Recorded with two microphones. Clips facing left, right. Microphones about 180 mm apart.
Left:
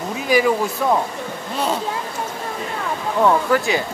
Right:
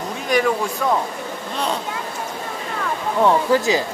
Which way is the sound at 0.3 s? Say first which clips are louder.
Left 2 dB; 5° left (ahead or behind).